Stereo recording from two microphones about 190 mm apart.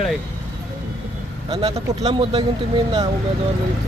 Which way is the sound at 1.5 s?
35° right (ahead or behind).